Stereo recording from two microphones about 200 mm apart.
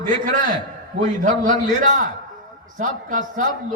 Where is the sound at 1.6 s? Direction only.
40° right (ahead or behind).